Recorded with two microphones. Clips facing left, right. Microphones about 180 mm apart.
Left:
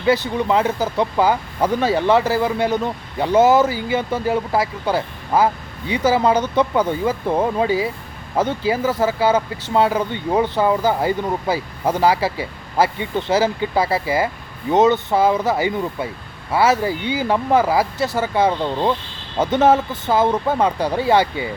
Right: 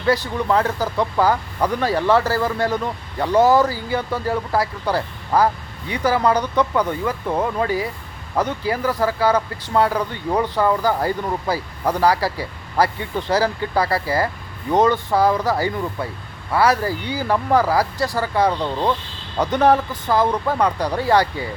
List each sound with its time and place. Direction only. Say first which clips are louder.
0.1 s speech: left 1 dB; 20° left (ahead or behind)